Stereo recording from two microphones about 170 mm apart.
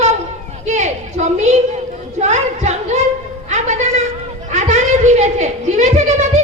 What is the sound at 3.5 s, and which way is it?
Music, 45° right (ahead or behind).